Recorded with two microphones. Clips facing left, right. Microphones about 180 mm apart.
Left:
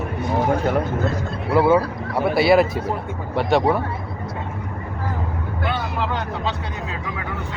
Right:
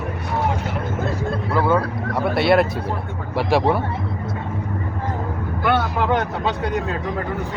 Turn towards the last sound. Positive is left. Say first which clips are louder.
# right 6 dB
turn(degrees=-55)  # may be behind; listen again after turning